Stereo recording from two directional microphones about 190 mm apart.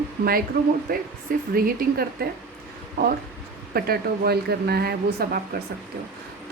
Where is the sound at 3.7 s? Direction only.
55° right (ahead or behind).